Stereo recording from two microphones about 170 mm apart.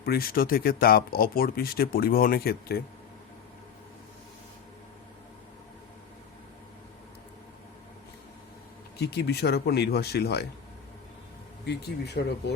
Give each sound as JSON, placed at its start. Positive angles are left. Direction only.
{"t": 0.0, "sound": "speech", "side_deg": 65}
{"t": 9.0, "sound": "speech", "side_deg": 75}
{"t": 11.6, "sound": "speech", "side_deg": 85}